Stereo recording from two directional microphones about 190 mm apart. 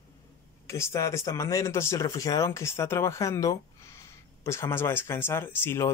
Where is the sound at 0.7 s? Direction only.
15° left (ahead or behind).